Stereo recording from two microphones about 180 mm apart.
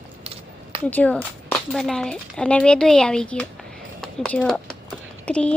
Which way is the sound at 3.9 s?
5° left (ahead or behind).